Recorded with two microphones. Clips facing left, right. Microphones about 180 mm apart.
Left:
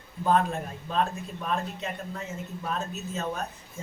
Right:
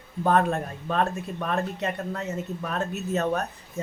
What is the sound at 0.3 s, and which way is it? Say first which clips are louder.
Speech: right 2 dB; 65° right (ahead or behind).